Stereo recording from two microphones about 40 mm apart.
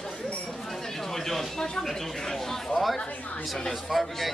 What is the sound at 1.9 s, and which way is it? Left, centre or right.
Speech, centre.